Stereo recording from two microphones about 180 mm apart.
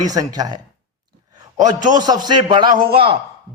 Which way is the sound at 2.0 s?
20° right (ahead or behind).